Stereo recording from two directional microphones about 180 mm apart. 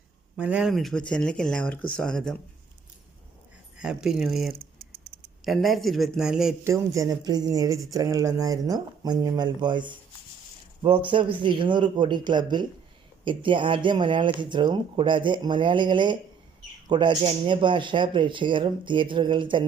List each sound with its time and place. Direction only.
0.3 s speech: 5° right (ahead or behind)
3.8 s speech: 5° right (ahead or behind)
6.7 s speech: 20° right (ahead or behind)